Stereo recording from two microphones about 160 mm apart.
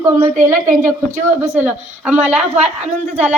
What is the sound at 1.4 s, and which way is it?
A woman's voice, 10° right (ahead or behind).